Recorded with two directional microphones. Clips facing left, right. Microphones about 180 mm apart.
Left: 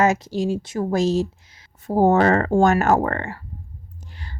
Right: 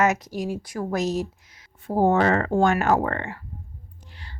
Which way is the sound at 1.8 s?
40° left (ahead or behind).